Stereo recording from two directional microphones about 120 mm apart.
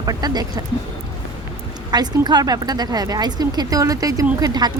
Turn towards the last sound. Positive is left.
turn(degrees=-35)  # may be behind; listen again after turning